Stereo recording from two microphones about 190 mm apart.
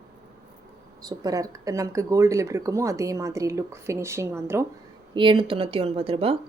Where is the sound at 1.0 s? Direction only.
20° right (ahead or behind).